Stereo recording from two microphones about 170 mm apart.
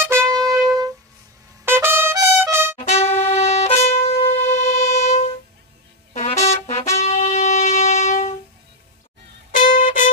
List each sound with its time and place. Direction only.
0.0 s trumpet: 15° right (ahead or behind)
2.9 s music: 40° left (ahead or behind)
4.5 s civil defense siren: 40° left (ahead or behind)
6.1 s music: 40° left (ahead or behind)
9.6 s music: 50° left (ahead or behind)